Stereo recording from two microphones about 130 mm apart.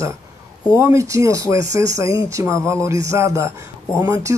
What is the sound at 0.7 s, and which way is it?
Speech, 20° right (ahead or behind).